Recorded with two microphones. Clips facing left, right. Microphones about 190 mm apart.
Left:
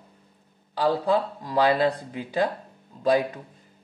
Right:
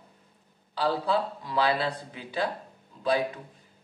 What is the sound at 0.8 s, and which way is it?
Speech, 45° left (ahead or behind).